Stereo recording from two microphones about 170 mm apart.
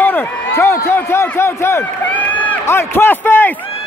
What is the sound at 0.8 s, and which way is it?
Speech, 15° left (ahead or behind).